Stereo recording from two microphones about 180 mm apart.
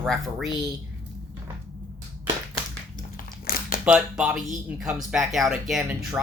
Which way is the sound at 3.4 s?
50° left (ahead or behind).